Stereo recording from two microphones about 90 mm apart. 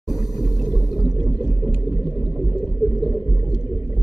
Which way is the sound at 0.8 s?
Centre (ahead or behind).